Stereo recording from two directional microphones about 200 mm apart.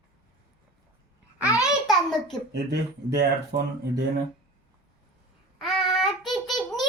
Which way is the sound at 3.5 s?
45° right (ahead or behind).